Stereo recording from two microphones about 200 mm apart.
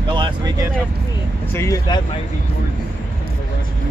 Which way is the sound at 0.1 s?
20° right (ahead or behind).